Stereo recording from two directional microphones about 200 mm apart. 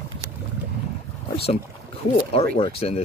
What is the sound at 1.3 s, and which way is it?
Speech, 30° left (ahead or behind).